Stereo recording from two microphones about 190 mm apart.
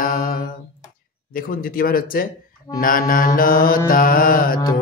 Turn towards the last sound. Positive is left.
turn(degrees=45)  # may be behind; listen again after turning